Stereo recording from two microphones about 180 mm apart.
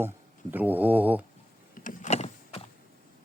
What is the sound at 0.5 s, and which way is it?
Speech, 10° right (ahead or behind).